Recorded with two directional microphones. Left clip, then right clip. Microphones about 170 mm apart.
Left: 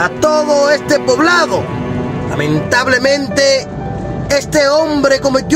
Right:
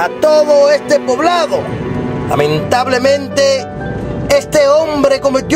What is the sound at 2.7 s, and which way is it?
Speech, 15° right (ahead or behind).